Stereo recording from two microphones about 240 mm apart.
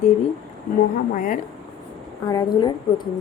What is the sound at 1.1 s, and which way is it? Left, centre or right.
Speech, left.